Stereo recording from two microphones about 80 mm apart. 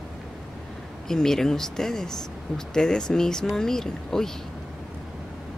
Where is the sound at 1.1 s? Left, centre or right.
Centre.